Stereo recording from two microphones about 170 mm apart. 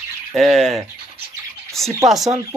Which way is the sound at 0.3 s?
Centre (ahead or behind).